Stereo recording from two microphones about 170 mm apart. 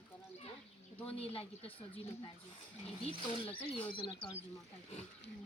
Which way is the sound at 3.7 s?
30° left (ahead or behind).